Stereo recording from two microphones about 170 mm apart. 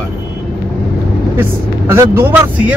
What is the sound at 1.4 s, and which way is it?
Speech, 15° right (ahead or behind).